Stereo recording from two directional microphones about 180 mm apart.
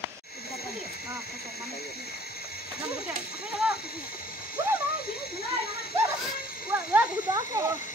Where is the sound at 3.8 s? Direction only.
55° left (ahead or behind).